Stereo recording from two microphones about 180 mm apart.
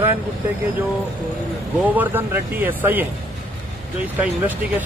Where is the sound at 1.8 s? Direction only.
10° right (ahead or behind).